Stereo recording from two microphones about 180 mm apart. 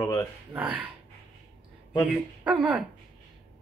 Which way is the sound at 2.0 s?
5° right (ahead or behind).